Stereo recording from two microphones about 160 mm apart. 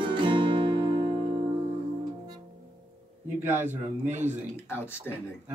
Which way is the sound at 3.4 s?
15° right (ahead or behind).